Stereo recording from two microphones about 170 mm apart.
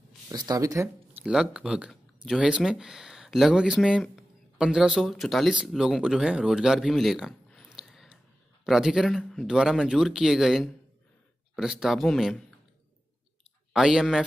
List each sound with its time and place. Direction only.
0.3 s speech: 25° right (ahead or behind)
1.2 s speech: 5° right (ahead or behind)
13.7 s speech: 5° right (ahead or behind)